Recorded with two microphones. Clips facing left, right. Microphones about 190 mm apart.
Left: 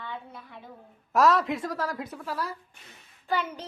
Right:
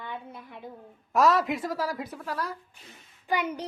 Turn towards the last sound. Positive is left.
turn(degrees=-15)  # may be behind; listen again after turning